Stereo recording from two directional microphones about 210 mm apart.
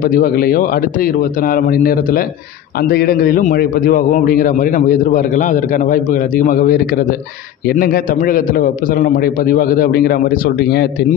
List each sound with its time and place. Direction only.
0.0 s a man's voice: 40° left (ahead or behind)